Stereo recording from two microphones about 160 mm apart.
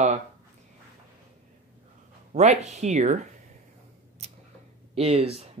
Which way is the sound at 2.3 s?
45° right (ahead or behind).